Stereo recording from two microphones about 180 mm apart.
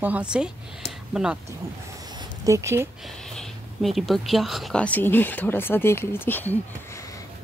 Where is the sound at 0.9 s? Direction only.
5° right (ahead or behind).